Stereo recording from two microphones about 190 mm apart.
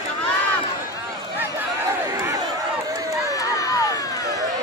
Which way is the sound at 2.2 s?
15° right (ahead or behind).